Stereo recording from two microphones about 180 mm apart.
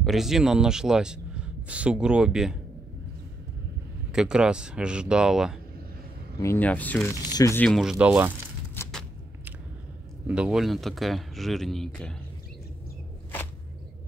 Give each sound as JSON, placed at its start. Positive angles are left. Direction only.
{"t": 0.0, "sound": "speech", "side_deg": 0}
{"t": 4.1, "sound": "speech", "side_deg": -5}
{"t": 6.4, "sound": "speech", "side_deg": 10}
{"t": 7.2, "sound": "speech", "side_deg": 20}
{"t": 7.5, "sound": "speech", "side_deg": 5}
{"t": 10.2, "sound": "speech", "side_deg": -5}